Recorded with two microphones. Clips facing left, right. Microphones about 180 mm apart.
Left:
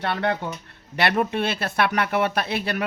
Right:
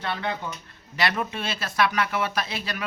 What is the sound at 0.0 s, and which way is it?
A man's voice, 65° left (ahead or behind).